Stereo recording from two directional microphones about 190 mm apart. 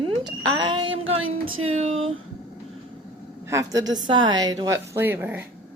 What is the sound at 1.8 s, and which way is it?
Speech, 35° right (ahead or behind).